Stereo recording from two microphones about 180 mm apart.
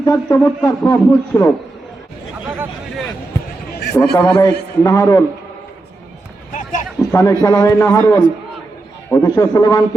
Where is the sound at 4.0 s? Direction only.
5° left (ahead or behind).